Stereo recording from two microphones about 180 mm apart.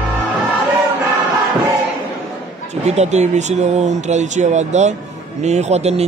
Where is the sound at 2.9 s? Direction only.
40° right (ahead or behind).